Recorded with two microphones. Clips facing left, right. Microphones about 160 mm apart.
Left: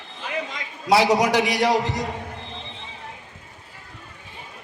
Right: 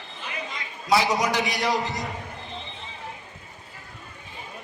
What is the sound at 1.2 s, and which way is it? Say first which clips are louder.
Speech: left 5 dB; 75° left (ahead or behind).